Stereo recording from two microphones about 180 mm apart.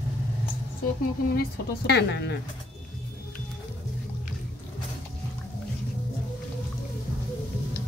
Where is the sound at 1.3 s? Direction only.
60° left (ahead or behind).